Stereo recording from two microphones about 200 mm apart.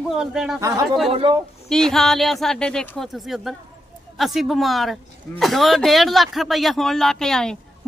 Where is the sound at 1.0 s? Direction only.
30° right (ahead or behind).